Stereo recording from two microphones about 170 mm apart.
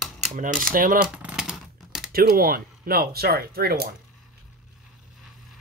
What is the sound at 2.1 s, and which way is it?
Speech, 65° right (ahead or behind).